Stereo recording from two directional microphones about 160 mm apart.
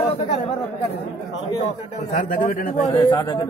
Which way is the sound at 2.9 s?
25° left (ahead or behind).